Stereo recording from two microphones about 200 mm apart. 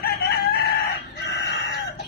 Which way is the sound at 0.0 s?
50° left (ahead or behind).